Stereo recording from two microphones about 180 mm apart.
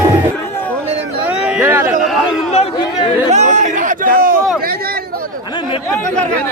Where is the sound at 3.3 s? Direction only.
40° right (ahead or behind).